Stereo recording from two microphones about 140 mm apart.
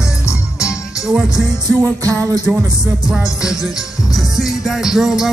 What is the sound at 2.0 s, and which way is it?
Music, 25° right (ahead or behind).